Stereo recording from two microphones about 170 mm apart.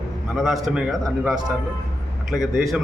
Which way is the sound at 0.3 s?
Centre (ahead or behind).